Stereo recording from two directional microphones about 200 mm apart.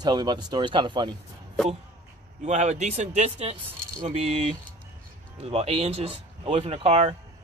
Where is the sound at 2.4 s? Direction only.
35° right (ahead or behind).